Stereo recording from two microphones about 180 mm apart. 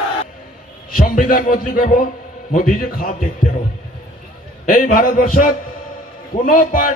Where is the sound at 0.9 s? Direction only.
50° left (ahead or behind).